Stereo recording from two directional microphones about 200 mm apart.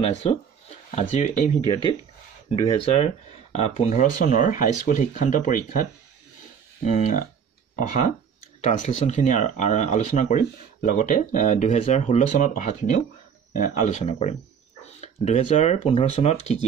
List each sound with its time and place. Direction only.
0.0 s speech: 30° left (ahead or behind)
1.6 s speech: 25° right (ahead or behind)
2.5 s speech: 25° left (ahead or behind)
8.5 s speech: 35° left (ahead or behind)